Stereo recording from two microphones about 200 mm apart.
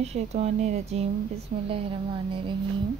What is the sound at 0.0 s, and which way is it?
A woman's voice, 30° right (ahead or behind).